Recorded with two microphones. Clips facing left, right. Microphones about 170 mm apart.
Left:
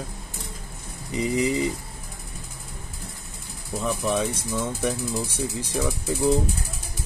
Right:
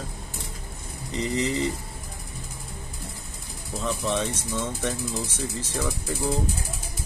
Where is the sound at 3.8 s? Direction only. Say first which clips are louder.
Left 2 dB; 10° left (ahead or behind).